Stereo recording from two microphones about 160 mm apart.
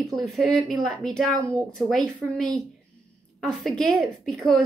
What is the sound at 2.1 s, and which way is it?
A woman's voice, 5° left (ahead or behind).